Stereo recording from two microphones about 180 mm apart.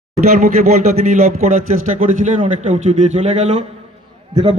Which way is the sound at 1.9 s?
40° right (ahead or behind).